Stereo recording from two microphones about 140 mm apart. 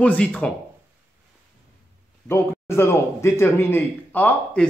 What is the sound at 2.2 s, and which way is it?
Speech, 20° left (ahead or behind).